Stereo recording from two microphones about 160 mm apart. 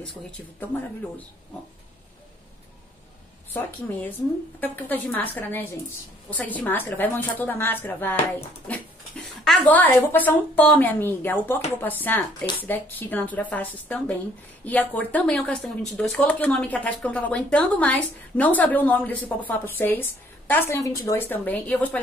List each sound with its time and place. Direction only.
4.6 s speech: 10° left (ahead or behind)